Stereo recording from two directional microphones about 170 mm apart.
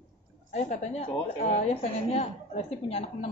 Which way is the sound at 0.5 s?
40° left (ahead or behind).